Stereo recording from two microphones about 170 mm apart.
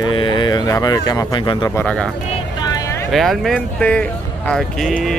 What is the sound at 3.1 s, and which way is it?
Speech, centre (ahead or behind).